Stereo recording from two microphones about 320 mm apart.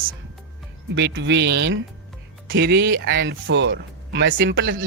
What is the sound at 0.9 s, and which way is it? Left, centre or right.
Speech, right.